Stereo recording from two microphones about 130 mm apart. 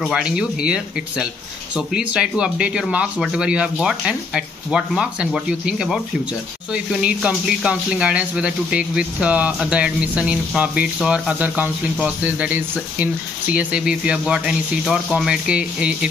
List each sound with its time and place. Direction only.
0.0 s speech: 5° right (ahead or behind)